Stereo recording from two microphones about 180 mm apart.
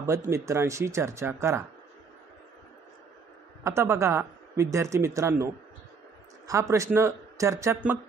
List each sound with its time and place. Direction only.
0.0 s speech: 15° right (ahead or behind)
3.6 s speech: 15° right (ahead or behind)